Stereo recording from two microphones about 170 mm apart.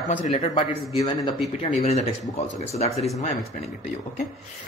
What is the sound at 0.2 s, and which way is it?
Speech, 35° left (ahead or behind).